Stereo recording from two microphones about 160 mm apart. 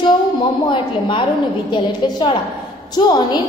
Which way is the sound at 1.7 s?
30° left (ahead or behind).